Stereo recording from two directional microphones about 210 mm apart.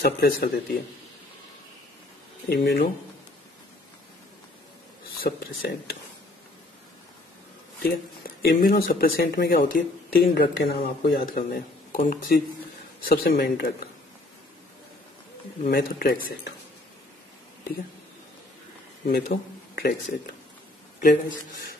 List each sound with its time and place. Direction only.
0.0 s speech: 45° left (ahead or behind)
2.5 s speech: 50° left (ahead or behind)
5.2 s speech: 50° left (ahead or behind)
8.4 s speech: 45° left (ahead or behind)
15.7 s speech: 45° left (ahead or behind)
19.0 s a man's voice: 50° left (ahead or behind)
21.0 s speech: 50° left (ahead or behind)